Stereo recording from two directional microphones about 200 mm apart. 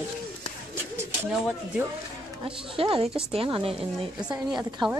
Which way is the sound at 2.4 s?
25° right (ahead or behind).